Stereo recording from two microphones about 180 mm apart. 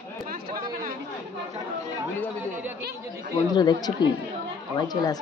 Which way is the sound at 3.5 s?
25° left (ahead or behind).